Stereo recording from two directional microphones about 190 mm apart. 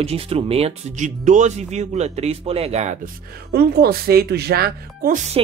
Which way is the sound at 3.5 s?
55° right (ahead or behind).